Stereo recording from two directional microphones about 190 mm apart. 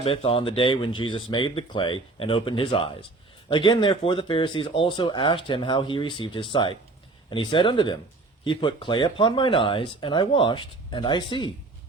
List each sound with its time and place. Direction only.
0.0 s speech: 30° left (ahead or behind)